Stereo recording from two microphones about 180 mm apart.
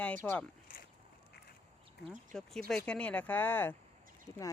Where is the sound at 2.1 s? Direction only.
Centre (ahead or behind); by 4.4 s 20° left (ahead or behind).